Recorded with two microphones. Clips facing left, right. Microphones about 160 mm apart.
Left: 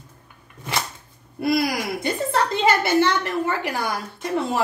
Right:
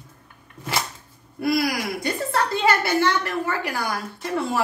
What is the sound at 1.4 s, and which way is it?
A woman's voice, 25° left (ahead or behind).